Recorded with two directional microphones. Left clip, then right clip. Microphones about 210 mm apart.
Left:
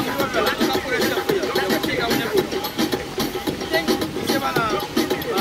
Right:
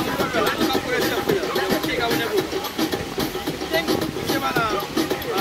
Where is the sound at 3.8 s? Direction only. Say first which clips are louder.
Left 1 dB; 35° left (ahead or behind).